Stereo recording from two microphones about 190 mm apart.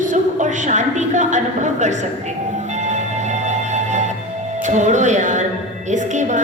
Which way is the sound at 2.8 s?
40° right (ahead or behind).